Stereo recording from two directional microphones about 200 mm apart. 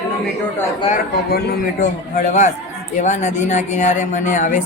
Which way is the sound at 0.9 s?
50° left (ahead or behind).